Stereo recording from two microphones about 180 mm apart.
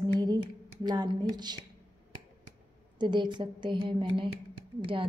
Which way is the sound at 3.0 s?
25° right (ahead or behind).